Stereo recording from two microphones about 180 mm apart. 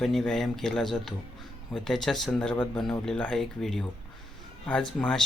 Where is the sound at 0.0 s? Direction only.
Centre (ahead or behind).